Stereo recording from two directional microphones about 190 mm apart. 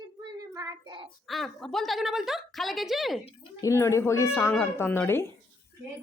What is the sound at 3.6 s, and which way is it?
Speech, 15° left (ahead or behind).